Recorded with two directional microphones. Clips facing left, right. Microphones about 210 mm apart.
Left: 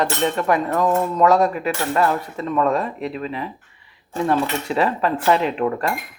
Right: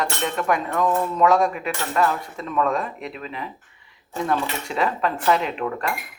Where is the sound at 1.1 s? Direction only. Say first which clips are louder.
Left 2 dB; centre (ahead or behind).